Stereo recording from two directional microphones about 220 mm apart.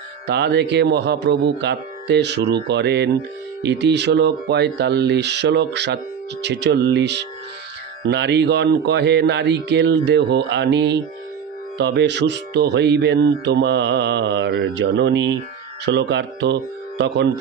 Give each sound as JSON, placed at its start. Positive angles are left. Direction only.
{"t": 0.3, "sound": "speech", "side_deg": -50}